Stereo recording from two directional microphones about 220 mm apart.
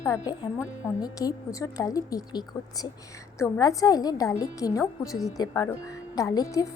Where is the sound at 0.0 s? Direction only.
15° left (ahead or behind).